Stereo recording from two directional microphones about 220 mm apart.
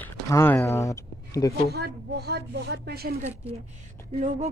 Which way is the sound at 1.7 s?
45° right (ahead or behind).